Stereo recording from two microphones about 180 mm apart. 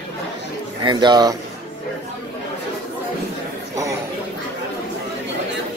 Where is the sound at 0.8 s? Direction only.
25° right (ahead or behind).